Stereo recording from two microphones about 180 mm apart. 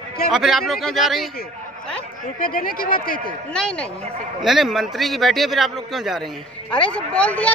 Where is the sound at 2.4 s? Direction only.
50° left (ahead or behind).